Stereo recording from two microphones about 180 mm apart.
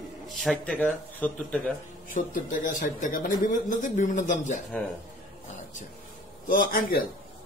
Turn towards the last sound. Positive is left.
turn(degrees=55)  # may be behind; listen again after turning